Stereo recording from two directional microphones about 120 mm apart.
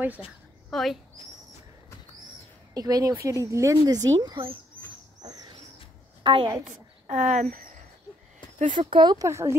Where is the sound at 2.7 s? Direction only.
30° right (ahead or behind).